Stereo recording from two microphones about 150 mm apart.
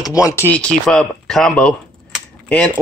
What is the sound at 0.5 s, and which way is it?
Speech, 5° left (ahead or behind).